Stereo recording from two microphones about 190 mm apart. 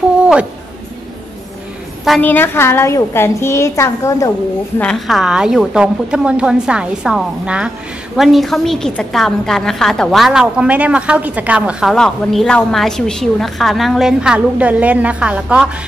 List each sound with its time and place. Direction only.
2.0 s a woman's voice: 5° left (ahead or behind)
4.7 s a woman's voice: 5° left (ahead or behind)